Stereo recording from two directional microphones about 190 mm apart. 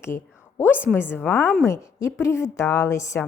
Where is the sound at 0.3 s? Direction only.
10° left (ahead or behind).